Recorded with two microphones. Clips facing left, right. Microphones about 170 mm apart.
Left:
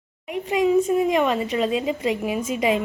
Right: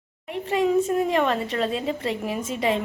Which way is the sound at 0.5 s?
10° left (ahead or behind).